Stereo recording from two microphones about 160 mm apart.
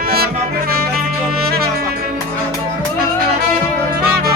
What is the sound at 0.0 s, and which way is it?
Music, 70° right (ahead or behind).